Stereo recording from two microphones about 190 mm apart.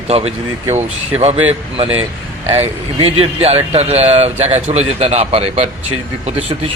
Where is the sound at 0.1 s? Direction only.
35° right (ahead or behind).